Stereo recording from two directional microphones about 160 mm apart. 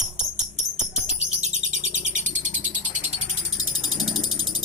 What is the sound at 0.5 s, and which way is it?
Bird, 45° right (ahead or behind).